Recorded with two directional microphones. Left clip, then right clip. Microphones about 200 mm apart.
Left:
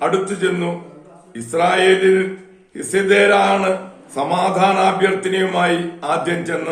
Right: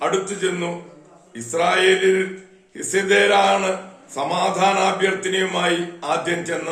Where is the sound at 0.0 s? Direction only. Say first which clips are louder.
Left 3 dB; 5° left (ahead or behind).